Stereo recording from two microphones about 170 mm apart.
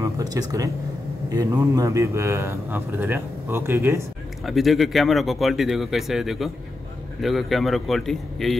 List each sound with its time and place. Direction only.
0.0 s a sound: 20° right (ahead or behind)
1.3 s a man's voice: 20° right (ahead or behind)
4.5 s speech: centre (ahead or behind)